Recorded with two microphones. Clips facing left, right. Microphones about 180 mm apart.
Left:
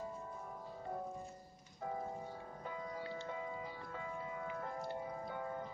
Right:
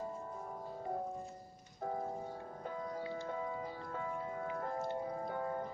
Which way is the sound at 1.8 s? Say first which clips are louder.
Right 3 dB; 50° right (ahead or behind).